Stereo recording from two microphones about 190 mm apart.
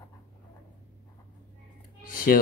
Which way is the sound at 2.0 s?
45° left (ahead or behind).